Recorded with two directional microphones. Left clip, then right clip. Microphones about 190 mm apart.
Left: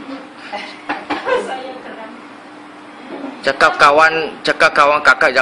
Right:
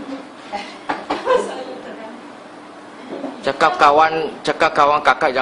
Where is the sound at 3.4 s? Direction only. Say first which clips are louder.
Left 3 dB; centre (ahead or behind).